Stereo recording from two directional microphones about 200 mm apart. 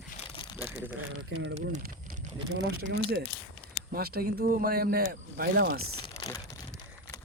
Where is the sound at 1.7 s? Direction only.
45° right (ahead or behind).